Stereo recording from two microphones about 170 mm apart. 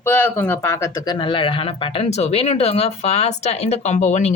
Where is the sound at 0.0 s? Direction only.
15° left (ahead or behind).